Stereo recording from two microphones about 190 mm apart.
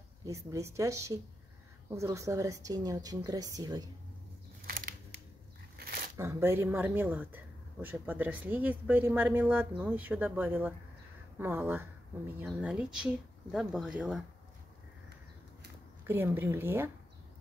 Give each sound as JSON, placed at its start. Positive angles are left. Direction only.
{"t": 0.2, "sound": "a woman's voice", "side_deg": -15}
{"t": 4.6, "sound": "crushing", "side_deg": -50}
{"t": 5.8, "sound": "a sound", "side_deg": -55}
{"t": 6.1, "sound": "speech", "side_deg": -15}
{"t": 16.0, "sound": "speech", "side_deg": -10}